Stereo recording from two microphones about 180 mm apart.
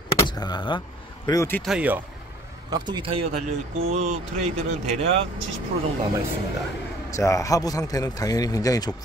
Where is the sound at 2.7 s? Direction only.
25° right (ahead or behind).